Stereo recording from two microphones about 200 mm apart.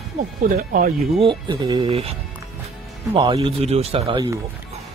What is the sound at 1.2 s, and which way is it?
Speech, 25° right (ahead or behind).